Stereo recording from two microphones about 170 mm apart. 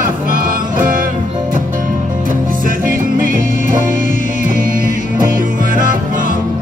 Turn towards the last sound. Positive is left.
turn(degrees=-50)  # may be behind; listen again after turning